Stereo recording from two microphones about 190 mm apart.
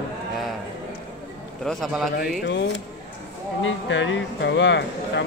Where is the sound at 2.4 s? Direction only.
75° left (ahead or behind).